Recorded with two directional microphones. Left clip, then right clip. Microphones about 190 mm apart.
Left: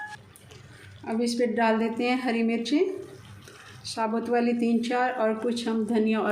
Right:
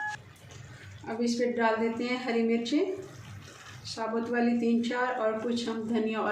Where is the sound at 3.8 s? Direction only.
50° left (ahead or behind).